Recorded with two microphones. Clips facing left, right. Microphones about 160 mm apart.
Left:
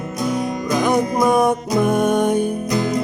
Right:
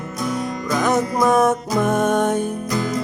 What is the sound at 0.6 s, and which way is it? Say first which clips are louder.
Music: left 1 dB; 15° left (ahead or behind).